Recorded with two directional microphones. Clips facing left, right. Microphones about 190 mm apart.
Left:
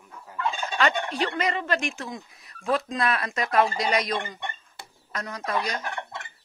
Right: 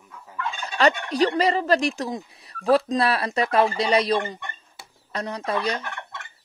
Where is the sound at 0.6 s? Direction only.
40° right (ahead or behind).